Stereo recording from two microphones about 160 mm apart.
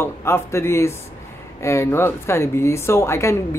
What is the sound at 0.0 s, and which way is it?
Speech, 15° left (ahead or behind).